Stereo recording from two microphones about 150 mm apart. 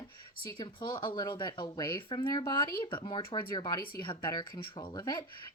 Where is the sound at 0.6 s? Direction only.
30° left (ahead or behind).